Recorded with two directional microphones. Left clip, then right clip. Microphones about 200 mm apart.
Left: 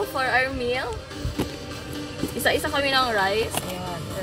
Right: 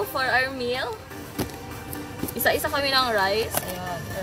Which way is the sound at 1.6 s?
45° right (ahead or behind).